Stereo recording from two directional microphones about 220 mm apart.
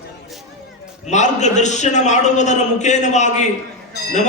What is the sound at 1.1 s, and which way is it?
Speech, 30° left (ahead or behind).